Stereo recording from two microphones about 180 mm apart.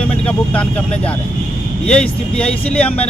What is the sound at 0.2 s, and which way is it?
Speech, 5° left (ahead or behind).